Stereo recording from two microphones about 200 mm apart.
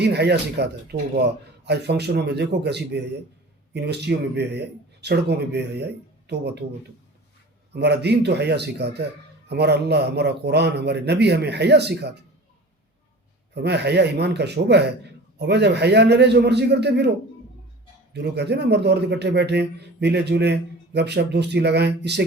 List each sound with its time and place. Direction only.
0.0 s a man's voice: 55° right (ahead or behind)
7.7 s a man's voice: 55° right (ahead or behind)
13.5 s a man's voice: 55° right (ahead or behind)
18.1 s a man's voice: 55° right (ahead or behind)